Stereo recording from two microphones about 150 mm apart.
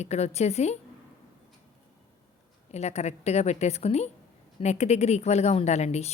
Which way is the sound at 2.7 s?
45° left (ahead or behind).